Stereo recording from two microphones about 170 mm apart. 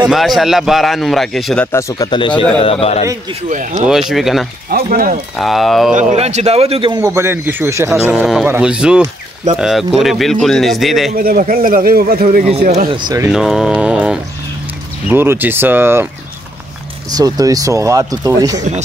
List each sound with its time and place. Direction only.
0.0 s a man's voice: centre (ahead or behind); by 3.1 s 35° left (ahead or behind)
3.4 s speech: 50° right (ahead or behind)
4.1 s a man's voice: centre (ahead or behind)
4.6 s a man's voice: 55° right (ahead or behind)
5.3 s a man's voice: centre (ahead or behind)
5.9 s speech: 40° right (ahead or behind)
7.0 s speech: 15° right (ahead or behind)
8.1 s a man's voice: 5° right (ahead or behind)
11.1 s a man's voice: 60° right (ahead or behind)
12.8 s speech: 25° right (ahead or behind)
13.3 s mantra: centre (ahead or behind)
15.0 s speech: 10° right (ahead or behind)
17.1 s speech: 20° right (ahead or behind)